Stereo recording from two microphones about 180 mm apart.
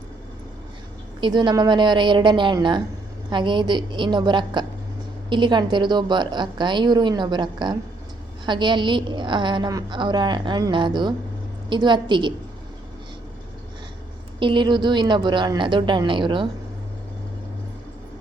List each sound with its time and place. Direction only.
1.2 s a woman's voice: 25° right (ahead or behind)
14.3 s a woman's voice: 25° right (ahead or behind)